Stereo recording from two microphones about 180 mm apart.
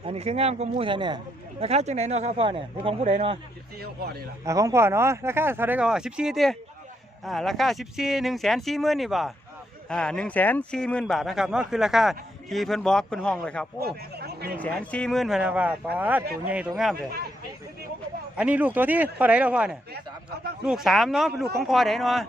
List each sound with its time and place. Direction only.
0.0 s a man's voice: 35° right (ahead or behind)
3.8 s speech: 60° right (ahead or behind)
4.4 s speech: 15° right (ahead or behind); by 13.7 s 5° left (ahead or behind)
13.8 s speech: 60° right (ahead or behind)
14.6 s speech: 5° left (ahead or behind)
18.3 s speech: 10° right (ahead or behind)